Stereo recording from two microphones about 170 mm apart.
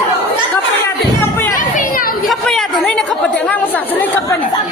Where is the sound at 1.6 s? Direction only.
55° left (ahead or behind).